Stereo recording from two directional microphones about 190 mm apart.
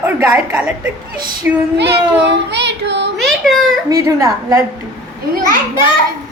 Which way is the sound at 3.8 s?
20° right (ahead or behind).